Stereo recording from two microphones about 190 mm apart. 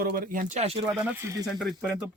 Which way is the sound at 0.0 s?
50° right (ahead or behind).